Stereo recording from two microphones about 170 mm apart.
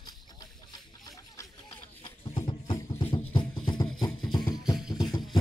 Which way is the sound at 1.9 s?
35° left (ahead or behind).